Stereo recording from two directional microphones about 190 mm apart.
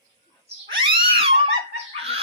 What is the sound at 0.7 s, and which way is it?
Cat, 25° right (ahead or behind).